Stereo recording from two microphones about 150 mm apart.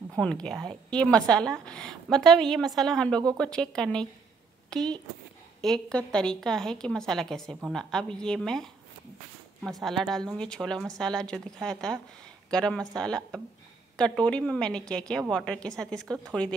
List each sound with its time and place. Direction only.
0.2 s a woman's voice: 5° left (ahead or behind)